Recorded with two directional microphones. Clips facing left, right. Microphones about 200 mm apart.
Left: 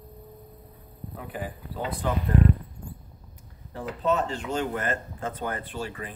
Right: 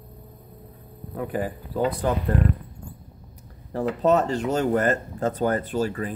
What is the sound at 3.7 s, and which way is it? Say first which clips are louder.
Speech: right 6 dB; 40° right (ahead or behind).